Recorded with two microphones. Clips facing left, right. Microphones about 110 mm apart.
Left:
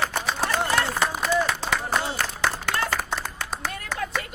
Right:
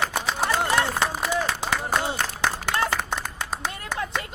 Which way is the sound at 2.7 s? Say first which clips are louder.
Right 1 dB; 25° right (ahead or behind).